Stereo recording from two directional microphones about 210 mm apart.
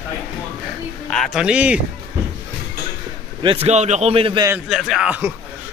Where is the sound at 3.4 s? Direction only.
25° right (ahead or behind).